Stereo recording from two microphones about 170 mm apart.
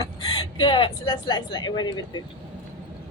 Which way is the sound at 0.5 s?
25° left (ahead or behind).